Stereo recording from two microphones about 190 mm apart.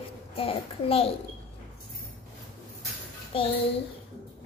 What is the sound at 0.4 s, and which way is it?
Speech, 30° left (ahead or behind).